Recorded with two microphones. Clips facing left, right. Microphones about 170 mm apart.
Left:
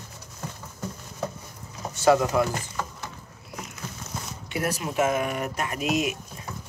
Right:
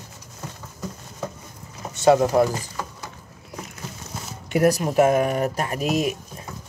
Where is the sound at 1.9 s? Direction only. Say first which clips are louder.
Right 3 dB; 20° right (ahead or behind).